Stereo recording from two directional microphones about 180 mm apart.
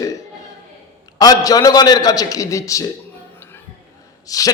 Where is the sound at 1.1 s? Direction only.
20° left (ahead or behind).